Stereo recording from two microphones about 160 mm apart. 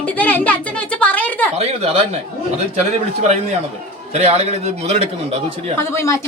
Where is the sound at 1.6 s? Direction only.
40° right (ahead or behind).